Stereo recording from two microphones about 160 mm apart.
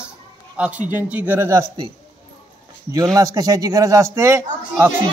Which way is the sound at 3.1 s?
20° right (ahead or behind).